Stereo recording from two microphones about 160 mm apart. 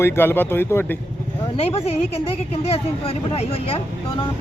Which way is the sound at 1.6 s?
40° left (ahead or behind).